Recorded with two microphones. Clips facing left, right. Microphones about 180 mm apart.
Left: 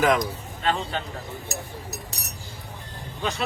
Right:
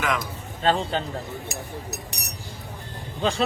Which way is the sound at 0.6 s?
30° right (ahead or behind).